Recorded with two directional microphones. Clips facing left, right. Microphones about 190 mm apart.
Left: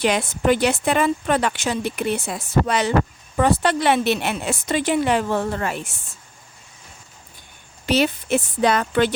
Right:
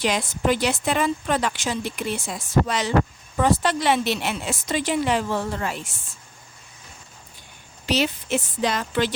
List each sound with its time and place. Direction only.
0.0 s a woman's voice: 60° left (ahead or behind)
7.9 s a woman's voice: 55° left (ahead or behind)